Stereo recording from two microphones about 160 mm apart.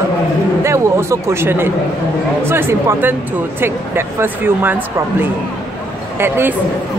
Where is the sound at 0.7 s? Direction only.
20° right (ahead or behind).